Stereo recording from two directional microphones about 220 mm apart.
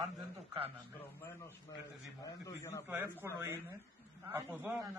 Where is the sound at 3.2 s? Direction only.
10° right (ahead or behind).